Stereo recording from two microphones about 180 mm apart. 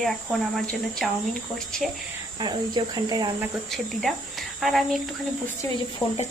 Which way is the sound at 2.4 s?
25° right (ahead or behind).